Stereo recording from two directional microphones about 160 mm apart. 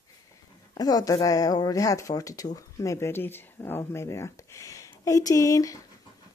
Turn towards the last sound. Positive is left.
turn(degrees=20)  # may be behind; listen again after turning